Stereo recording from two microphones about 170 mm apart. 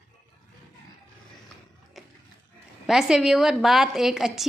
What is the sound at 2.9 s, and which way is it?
A woman's voice, 5° right (ahead or behind).